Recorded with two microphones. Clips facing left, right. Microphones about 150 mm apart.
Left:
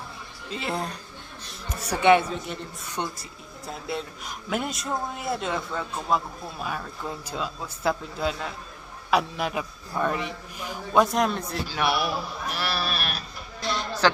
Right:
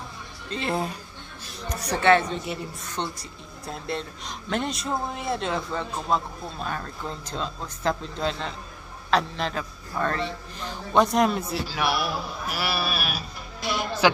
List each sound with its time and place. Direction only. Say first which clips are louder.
0.5 s a man's voice: right 3 dB; centre (ahead or behind)
2.3 s a man's voice: right 2 dB; centre (ahead or behind)